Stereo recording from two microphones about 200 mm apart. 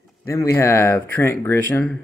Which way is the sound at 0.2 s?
15° left (ahead or behind).